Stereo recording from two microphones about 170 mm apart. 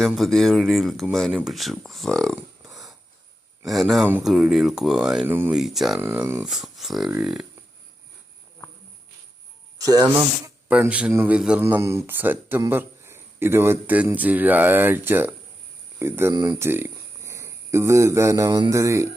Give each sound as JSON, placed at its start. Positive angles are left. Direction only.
{"t": 0.0, "sound": "speech", "side_deg": 5}
{"t": 6.0, "sound": "speech", "side_deg": -15}
{"t": 6.4, "sound": "speech", "side_deg": 0}
{"t": 9.7, "sound": "speech", "side_deg": -20}
{"t": 10.7, "sound": "speech", "side_deg": -5}